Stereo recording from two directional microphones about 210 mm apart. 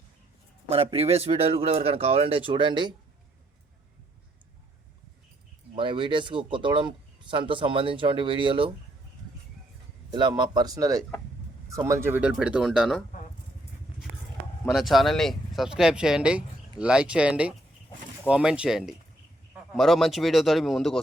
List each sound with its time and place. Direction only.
0.7 s speech: 25° right (ahead or behind)
5.7 s speech: 25° right (ahead or behind)
10.1 s speech: 20° right (ahead or behind); by 13.0 s centre (ahead or behind)
14.7 s speech: centre (ahead or behind)